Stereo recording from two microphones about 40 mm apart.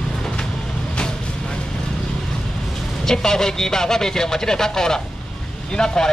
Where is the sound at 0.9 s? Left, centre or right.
Left.